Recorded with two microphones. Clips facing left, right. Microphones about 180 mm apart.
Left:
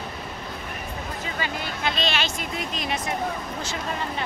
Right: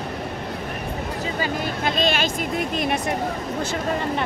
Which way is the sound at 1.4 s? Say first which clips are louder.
Right 4 dB; 45° right (ahead or behind).